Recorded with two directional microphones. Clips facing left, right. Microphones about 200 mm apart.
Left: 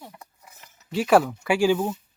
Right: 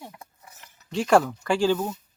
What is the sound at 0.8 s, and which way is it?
Speech, 5° left (ahead or behind).